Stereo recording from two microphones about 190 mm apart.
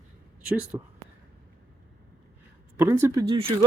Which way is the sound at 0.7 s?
15° right (ahead or behind).